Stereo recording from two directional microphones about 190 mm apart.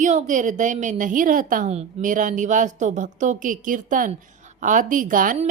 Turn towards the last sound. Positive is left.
turn(degrees=-45)  # may be behind; listen again after turning